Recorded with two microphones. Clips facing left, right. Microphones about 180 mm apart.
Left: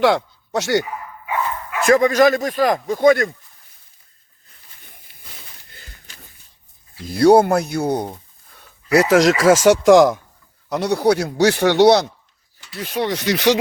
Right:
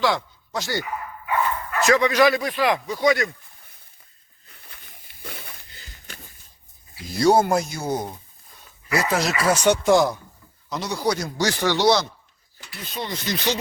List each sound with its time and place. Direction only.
0.0 s speech: 65° left (ahead or behind)
1.8 s speech: 50° left (ahead or behind)
5.6 s a sound: 55° left (ahead or behind)
7.1 s speech: 60° left (ahead or behind)
8.5 s a sound: 70° left (ahead or behind); by 9.3 s 90° left
9.4 s speech: 90° left
10.7 s speech: 65° left (ahead or behind)
12.8 s speech: 75° left (ahead or behind)